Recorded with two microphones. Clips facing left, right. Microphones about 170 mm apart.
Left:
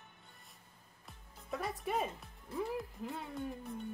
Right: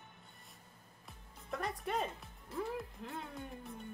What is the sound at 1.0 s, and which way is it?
Speech, centre (ahead or behind).